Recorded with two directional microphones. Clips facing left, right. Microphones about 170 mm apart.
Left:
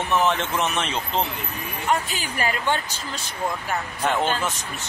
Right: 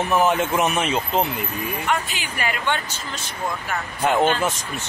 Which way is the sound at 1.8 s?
40° left (ahead or behind).